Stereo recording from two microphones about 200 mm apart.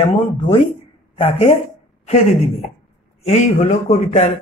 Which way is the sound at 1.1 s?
30° left (ahead or behind).